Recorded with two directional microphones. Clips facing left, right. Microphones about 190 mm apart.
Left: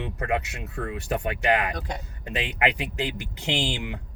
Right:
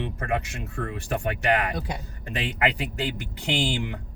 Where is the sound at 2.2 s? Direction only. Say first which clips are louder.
Even; 20° left (ahead or behind).